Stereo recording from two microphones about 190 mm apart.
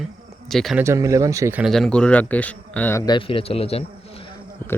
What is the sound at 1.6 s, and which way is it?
Speech, centre (ahead or behind).